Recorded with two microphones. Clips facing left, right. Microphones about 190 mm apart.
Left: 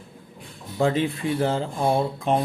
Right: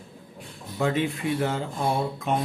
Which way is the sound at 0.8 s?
30° left (ahead or behind).